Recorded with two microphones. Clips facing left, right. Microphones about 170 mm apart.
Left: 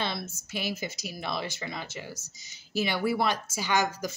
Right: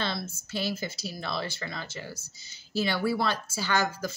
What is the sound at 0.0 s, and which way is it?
A woman's voice, 20° left (ahead or behind).